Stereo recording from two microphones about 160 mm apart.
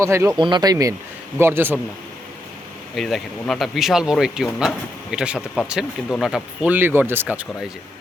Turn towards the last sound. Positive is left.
turn(degrees=-10)  # may be behind; listen again after turning